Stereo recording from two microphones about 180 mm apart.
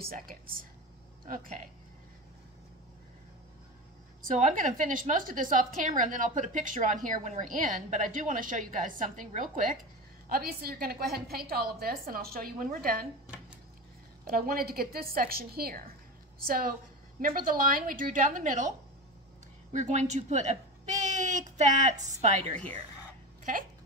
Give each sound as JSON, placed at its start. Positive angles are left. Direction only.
{"t": 0.0, "sound": "a woman's voice", "side_deg": -55}
{"t": 4.2, "sound": "a woman's voice", "side_deg": -45}
{"t": 10.2, "sound": "a woman's voice", "side_deg": -55}
{"t": 14.3, "sound": "a woman's voice", "side_deg": -55}